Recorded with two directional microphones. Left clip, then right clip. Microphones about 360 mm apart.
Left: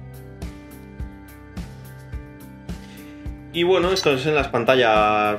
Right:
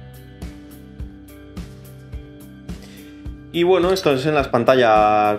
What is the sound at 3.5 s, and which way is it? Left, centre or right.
Speech, centre.